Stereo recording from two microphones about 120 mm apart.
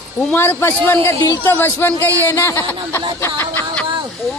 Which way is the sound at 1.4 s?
15° left (ahead or behind).